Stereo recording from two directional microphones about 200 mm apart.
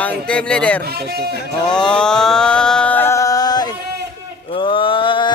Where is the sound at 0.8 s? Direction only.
50° right (ahead or behind).